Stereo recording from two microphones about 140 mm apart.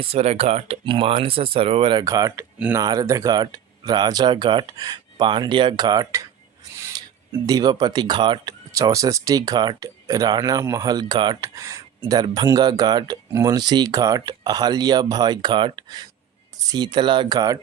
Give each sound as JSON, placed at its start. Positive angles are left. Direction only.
{"t": 0.0, "sound": "speech", "side_deg": -45}
{"t": 7.4, "sound": "speech", "side_deg": -30}
{"t": 8.7, "sound": "speech", "side_deg": -25}